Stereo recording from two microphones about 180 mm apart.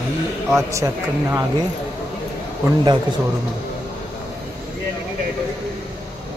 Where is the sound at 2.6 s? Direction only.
25° right (ahead or behind).